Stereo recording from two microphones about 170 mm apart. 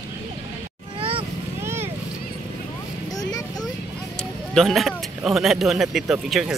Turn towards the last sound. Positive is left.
turn(degrees=-5)  # may be behind; listen again after turning